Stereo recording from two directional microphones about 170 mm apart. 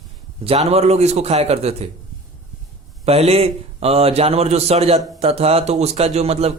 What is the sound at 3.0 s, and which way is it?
A man's voice, 35° right (ahead or behind).